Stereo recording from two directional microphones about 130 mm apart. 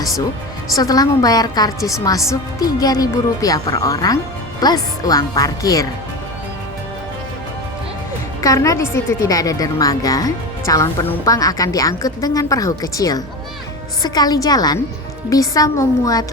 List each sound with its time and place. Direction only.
0.8 s a woman's voice: 30° left (ahead or behind)
8.4 s a woman's voice: 25° left (ahead or behind)